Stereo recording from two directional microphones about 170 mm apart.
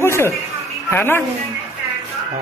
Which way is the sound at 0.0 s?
15° left (ahead or behind).